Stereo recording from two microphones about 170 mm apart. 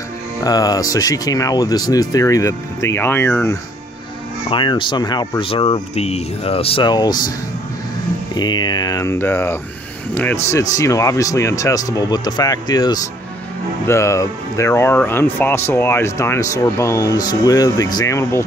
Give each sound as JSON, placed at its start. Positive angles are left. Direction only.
{"t": 0.4, "sound": "speech", "side_deg": 20}
{"t": 4.5, "sound": "speech", "side_deg": 30}
{"t": 8.4, "sound": "speech", "side_deg": 25}